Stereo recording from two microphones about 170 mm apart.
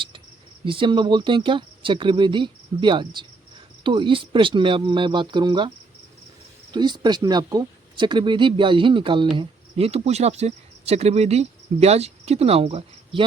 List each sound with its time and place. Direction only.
0.6 s speech: 30° right (ahead or behind)